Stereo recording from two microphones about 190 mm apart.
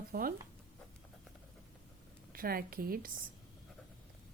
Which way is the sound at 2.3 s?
50° right (ahead or behind).